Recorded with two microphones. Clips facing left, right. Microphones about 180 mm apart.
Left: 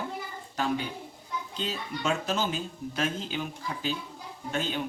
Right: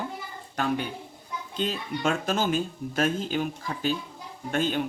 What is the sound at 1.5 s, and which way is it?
Speech, 50° right (ahead or behind).